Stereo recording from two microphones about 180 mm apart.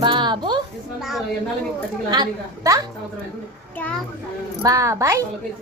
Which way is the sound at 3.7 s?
10° left (ahead or behind).